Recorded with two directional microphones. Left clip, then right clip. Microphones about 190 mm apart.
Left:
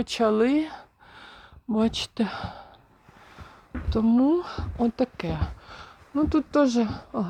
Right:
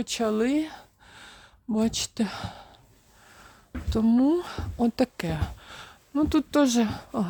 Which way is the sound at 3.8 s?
25° right (ahead or behind).